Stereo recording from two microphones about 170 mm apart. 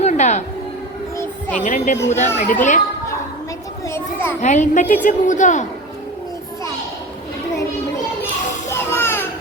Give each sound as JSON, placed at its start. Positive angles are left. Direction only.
{"t": 0.0, "sound": "a sound", "side_deg": 40}
{"t": 1.2, "sound": "music", "side_deg": 10}
{"t": 1.6, "sound": "a woman's voice", "side_deg": 45}
{"t": 3.8, "sound": "a child's voice", "side_deg": 15}
{"t": 4.4, "sound": "a woman's voice", "side_deg": 45}
{"t": 8.7, "sound": "music", "side_deg": 15}